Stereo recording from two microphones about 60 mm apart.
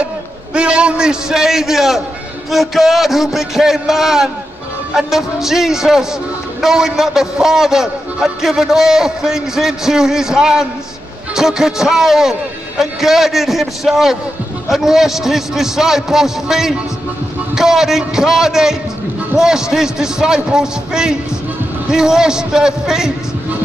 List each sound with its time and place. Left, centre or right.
0.6 s a man's voice: centre